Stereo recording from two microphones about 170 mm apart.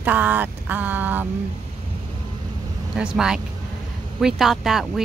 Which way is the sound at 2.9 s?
5° right (ahead or behind).